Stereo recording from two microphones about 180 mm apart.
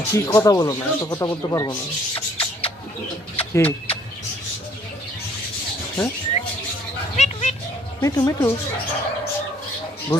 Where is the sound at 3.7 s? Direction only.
30° left (ahead or behind).